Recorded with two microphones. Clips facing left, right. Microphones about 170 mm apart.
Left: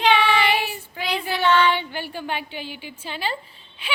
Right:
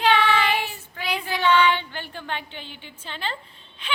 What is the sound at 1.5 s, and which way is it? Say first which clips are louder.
Child singing: even; 10° right (ahead or behind).